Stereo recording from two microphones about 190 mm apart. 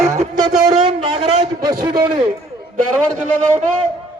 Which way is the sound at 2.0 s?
25° right (ahead or behind).